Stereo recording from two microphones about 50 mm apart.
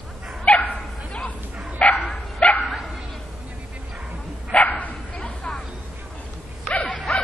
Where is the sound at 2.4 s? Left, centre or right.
Left.